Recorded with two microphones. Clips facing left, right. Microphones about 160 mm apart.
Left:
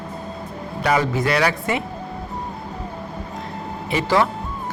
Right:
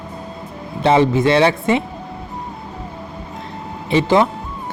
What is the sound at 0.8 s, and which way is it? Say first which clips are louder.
A man's voice: right 6 dB; 25° right (ahead or behind).